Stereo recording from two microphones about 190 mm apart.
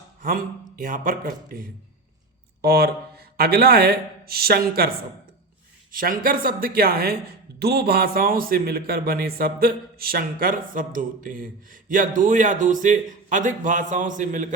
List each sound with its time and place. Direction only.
0.2 s speech: 45° right (ahead or behind)
5.9 s speech: 45° right (ahead or behind)